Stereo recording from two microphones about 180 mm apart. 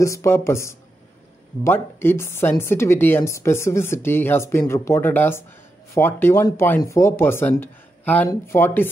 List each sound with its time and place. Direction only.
0.0 s a woman's voice: 15° left (ahead or behind)